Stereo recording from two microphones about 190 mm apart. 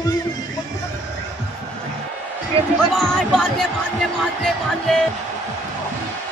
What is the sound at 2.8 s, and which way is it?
Speech, 5° left (ahead or behind).